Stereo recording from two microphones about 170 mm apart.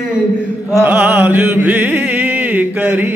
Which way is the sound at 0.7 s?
10° right (ahead or behind).